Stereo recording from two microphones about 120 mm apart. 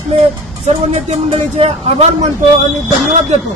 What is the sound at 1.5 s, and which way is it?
Speech, 60° right (ahead or behind).